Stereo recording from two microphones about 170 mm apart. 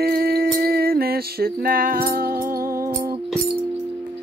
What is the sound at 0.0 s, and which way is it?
Music, 65° right (ahead or behind).